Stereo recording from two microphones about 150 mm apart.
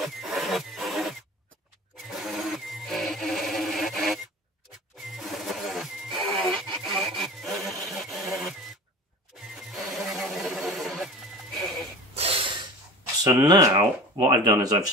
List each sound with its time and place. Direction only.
0.0 s a sound: centre (ahead or behind)
5.0 s music: centre (ahead or behind)
9.6 s a sound: centre (ahead or behind)
11.5 s music: centre (ahead or behind)
12.2 s snort: 40° right (ahead or behind)
13.2 s speech: 25° right (ahead or behind)